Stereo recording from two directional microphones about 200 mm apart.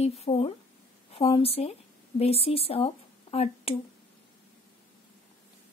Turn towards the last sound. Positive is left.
turn(degrees=30)  # may be behind; listen again after turning